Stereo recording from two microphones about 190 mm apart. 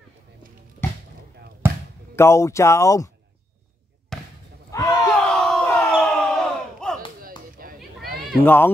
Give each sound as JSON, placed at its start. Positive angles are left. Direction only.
{"t": 0.8, "sound": "a sound", "side_deg": 15}
{"t": 2.1, "sound": "speech", "side_deg": 15}
{"t": 4.1, "sound": "basketball bounce", "side_deg": 0}
{"t": 4.6, "sound": "a sound", "side_deg": 15}
{"t": 5.0, "sound": "crowd", "side_deg": 5}
{"t": 7.2, "sound": "chop", "side_deg": -50}
{"t": 8.5, "sound": "speech", "side_deg": 10}